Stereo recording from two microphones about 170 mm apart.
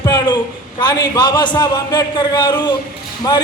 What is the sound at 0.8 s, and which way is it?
A man's voice, 25° left (ahead or behind).